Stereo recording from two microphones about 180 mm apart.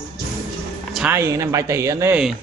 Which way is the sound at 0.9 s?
10° right (ahead or behind).